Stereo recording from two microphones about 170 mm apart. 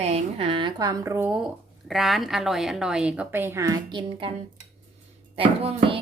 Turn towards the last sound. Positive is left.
turn(degrees=-35)  # may be behind; listen again after turning